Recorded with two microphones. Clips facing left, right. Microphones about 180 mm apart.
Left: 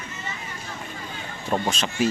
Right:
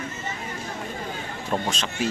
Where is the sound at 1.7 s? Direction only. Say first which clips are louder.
Left 4 dB; 5° left (ahead or behind).